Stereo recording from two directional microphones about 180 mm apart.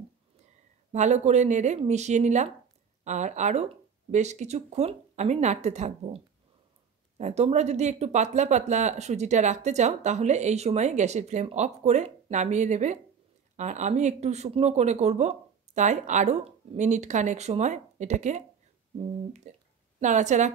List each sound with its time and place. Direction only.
0.9 s speech: 40° right (ahead or behind)
19.5 s a woman's voice: 40° right (ahead or behind)